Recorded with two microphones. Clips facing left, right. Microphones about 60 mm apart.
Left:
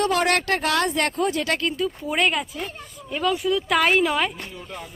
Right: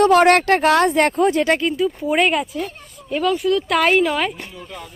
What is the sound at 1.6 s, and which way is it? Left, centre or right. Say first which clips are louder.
Speech: right 5 dB; centre.